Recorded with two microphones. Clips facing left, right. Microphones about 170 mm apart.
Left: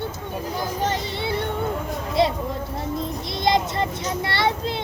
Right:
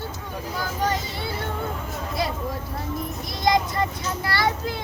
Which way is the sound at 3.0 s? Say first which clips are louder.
Even; 25° left (ahead or behind).